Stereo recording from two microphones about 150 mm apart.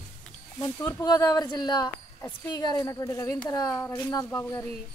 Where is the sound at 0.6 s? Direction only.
20° left (ahead or behind).